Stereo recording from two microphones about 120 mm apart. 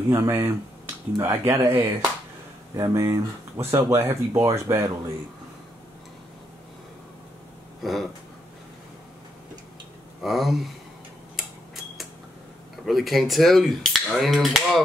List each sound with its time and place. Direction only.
0.1 s speech: 25° right (ahead or behind)
7.8 s speech: centre (ahead or behind)
10.2 s speech: centre (ahead or behind)
11.3 s tick-tock: centre (ahead or behind)
12.7 s speech: centre (ahead or behind)